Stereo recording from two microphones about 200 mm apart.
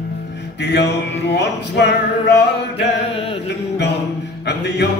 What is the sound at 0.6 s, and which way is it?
Music, 55° left (ahead or behind).